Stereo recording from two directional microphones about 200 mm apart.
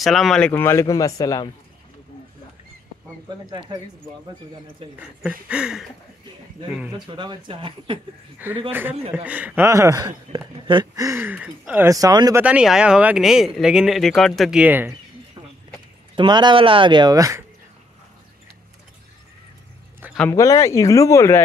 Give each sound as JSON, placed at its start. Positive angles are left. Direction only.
{"t": 0.0, "sound": "a man's voice", "side_deg": 0}
{"t": 5.2, "sound": "speech", "side_deg": -5}
{"t": 7.1, "sound": "speech", "side_deg": -25}
{"t": 8.4, "sound": "speech", "side_deg": -10}
{"t": 12.4, "sound": "speech", "side_deg": -5}
{"t": 16.2, "sound": "speech", "side_deg": -20}
{"t": 20.2, "sound": "a man's voice", "side_deg": 15}